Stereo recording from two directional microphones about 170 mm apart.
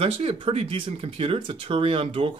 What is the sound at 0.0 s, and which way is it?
Speech, 35° right (ahead or behind).